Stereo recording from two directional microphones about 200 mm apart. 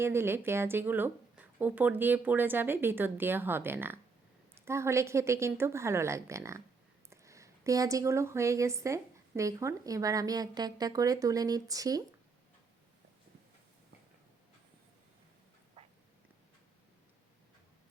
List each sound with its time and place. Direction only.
0.0 s a woman's voice: 10° right (ahead or behind)